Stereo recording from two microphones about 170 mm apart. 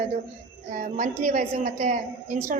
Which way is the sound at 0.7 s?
50° right (ahead or behind).